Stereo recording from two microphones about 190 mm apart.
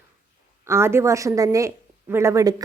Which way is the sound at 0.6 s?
15° right (ahead or behind).